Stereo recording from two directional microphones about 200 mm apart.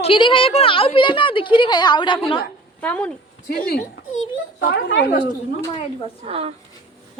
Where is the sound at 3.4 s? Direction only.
50° left (ahead or behind).